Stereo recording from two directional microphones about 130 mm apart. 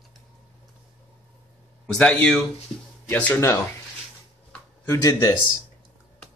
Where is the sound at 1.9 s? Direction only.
5° left (ahead or behind).